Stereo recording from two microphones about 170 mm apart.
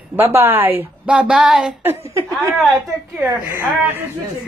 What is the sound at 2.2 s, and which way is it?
A woman's voice, 20° right (ahead or behind).